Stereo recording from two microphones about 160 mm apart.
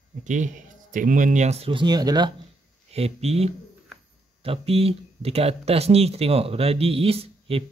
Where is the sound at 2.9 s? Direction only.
40° right (ahead or behind).